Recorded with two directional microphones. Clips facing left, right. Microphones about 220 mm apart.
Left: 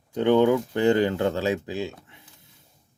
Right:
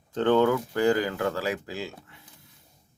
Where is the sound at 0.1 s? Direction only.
15° left (ahead or behind).